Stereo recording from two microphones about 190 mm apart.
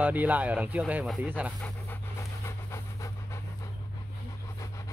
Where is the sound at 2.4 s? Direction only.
15° left (ahead or behind).